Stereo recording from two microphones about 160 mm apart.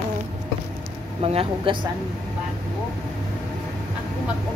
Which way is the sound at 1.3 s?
35° right (ahead or behind).